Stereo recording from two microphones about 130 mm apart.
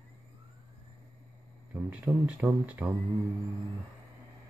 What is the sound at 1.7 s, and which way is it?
Speech, 10° right (ahead or behind).